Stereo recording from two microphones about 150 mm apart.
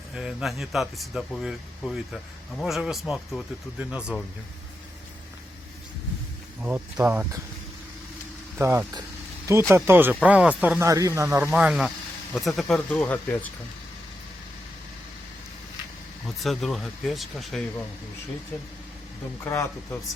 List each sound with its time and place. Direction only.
0.1 s speech: 5° right (ahead or behind)
6.6 s speech: 10° right (ahead or behind)
8.5 s speech: 15° right (ahead or behind)
11.5 s speech: 5° right (ahead or behind)
16.2 s speech: centre (ahead or behind)
19.5 s speech: 20° left (ahead or behind)